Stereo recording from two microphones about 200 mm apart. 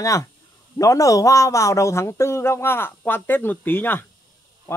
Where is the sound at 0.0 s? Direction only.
15° left (ahead or behind).